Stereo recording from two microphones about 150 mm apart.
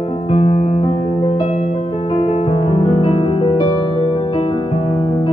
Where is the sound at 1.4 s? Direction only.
50° left (ahead or behind).